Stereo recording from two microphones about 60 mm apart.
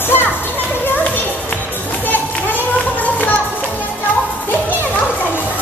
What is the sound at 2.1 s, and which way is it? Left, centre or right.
Children playing, left.